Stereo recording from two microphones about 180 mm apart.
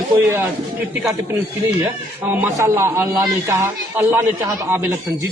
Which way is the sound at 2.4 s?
15° right (ahead or behind).